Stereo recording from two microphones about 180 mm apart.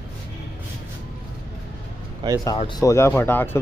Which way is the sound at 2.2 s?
25° right (ahead or behind).